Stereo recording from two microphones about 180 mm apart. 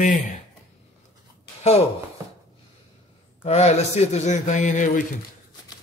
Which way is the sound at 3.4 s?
35° left (ahead or behind).